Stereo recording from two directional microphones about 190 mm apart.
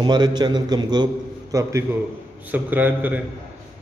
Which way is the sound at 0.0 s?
20° right (ahead or behind).